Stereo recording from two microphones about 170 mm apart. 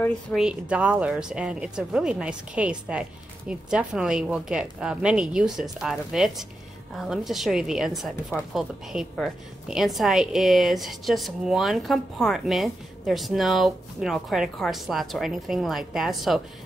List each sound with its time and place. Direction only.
0.4 s speech: 5° right (ahead or behind)